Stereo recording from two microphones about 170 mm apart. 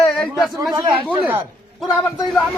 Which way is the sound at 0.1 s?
Centre (ahead or behind).